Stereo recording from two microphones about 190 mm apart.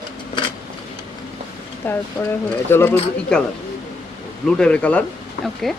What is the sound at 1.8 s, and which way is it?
Speech, 10° left (ahead or behind).